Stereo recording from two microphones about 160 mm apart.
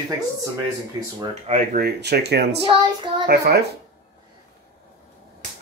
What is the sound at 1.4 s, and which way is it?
Speech, 60° right (ahead or behind).